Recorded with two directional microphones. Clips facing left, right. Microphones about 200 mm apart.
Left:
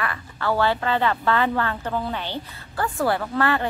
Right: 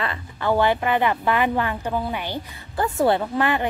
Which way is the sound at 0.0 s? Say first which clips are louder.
Right 1 dB; 20° right (ahead or behind).